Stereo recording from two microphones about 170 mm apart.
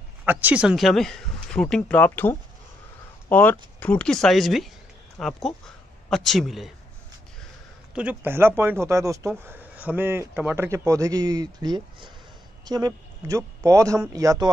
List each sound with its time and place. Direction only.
0.2 s speech: 10° right (ahead or behind)
7.9 s a man's voice: 10° right (ahead or behind)